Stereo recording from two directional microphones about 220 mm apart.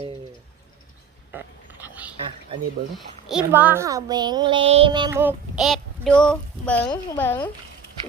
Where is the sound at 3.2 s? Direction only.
5° right (ahead or behind).